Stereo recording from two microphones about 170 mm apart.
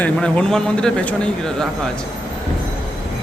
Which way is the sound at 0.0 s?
5° left (ahead or behind).